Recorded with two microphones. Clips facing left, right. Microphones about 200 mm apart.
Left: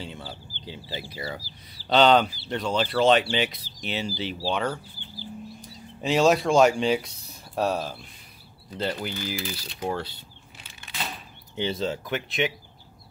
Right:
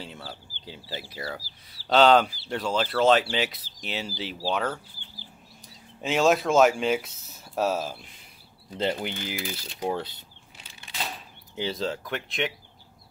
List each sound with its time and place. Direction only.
0.3 s speech: centre (ahead or behind)
5.9 s speech: centre (ahead or behind)
8.9 s speech: 20° right (ahead or behind)
11.5 s speech: centre (ahead or behind)